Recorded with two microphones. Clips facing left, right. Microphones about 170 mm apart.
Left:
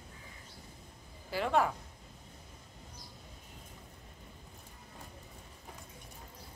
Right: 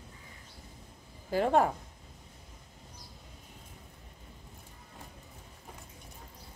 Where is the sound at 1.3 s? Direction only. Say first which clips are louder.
Right 4 dB; 45° right (ahead or behind).